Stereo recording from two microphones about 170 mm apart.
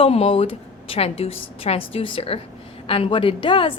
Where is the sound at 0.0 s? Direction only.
35° left (ahead or behind).